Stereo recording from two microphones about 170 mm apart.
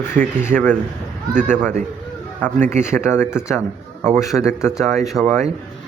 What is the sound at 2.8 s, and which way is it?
Speech, 15° left (ahead or behind).